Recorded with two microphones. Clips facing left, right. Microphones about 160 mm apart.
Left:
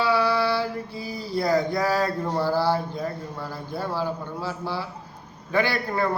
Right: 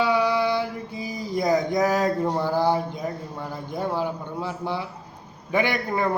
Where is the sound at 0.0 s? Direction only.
15° right (ahead or behind).